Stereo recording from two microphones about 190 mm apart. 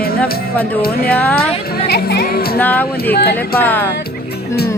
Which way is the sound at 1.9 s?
55° left (ahead or behind).